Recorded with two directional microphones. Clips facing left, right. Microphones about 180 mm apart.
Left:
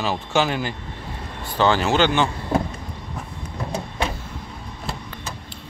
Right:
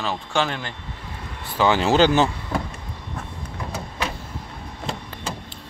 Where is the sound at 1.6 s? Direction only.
15° right (ahead or behind).